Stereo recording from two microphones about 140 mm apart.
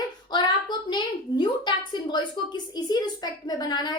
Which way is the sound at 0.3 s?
30° left (ahead or behind).